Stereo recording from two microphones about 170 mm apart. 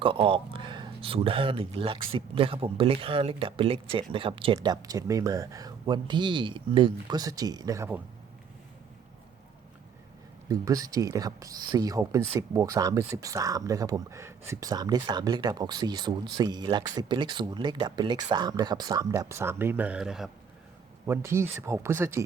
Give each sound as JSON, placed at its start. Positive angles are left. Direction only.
{"t": 0.0, "sound": "speech", "side_deg": -30}
{"t": 10.5, "sound": "speech", "side_deg": -20}
{"t": 21.1, "sound": "speech", "side_deg": -15}